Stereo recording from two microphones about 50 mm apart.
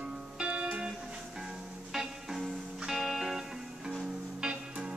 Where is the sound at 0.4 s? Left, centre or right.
Right.